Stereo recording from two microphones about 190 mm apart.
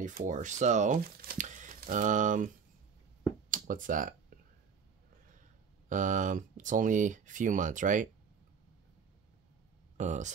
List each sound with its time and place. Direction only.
0.0 s speech: 40° right (ahead or behind)
3.4 s a sound: 45° right (ahead or behind)
5.9 s speech: 40° right (ahead or behind)
9.9 s speech: 40° right (ahead or behind)